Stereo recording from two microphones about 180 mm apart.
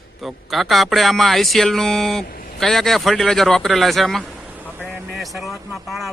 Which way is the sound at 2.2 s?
55° left (ahead or behind).